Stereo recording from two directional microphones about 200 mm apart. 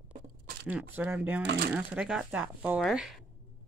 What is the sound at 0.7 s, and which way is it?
Speech, 10° right (ahead or behind).